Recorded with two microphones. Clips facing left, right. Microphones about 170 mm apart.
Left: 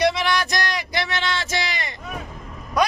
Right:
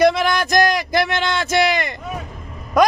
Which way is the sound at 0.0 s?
50° right (ahead or behind).